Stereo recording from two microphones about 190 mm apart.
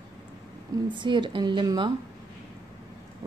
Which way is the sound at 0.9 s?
25° right (ahead or behind).